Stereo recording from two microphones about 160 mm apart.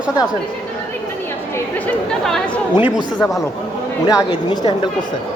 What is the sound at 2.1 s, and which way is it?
Chatter, 5° left (ahead or behind).